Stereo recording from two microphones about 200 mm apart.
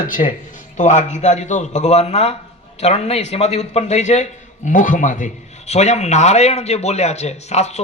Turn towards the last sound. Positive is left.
turn(degrees=35)  # may be behind; listen again after turning